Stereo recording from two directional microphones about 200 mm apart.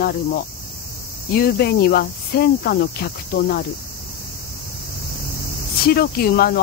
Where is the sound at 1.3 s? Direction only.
50° left (ahead or behind).